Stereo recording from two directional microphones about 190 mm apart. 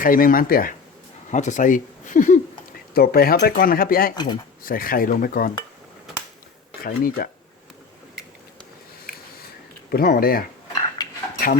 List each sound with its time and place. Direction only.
0.0 s speech: 45° left (ahead or behind)
2.9 s speech: 55° left (ahead or behind)
4.1 s speech: 25° left (ahead or behind)
4.6 s speech: 50° left (ahead or behind)
6.8 s speech: 50° left (ahead or behind)
9.9 s speech: 50° left (ahead or behind)
11.0 s cutlery: 20° left (ahead or behind)